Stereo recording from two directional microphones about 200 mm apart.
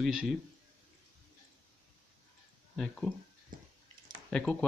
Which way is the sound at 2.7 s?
5° left (ahead or behind).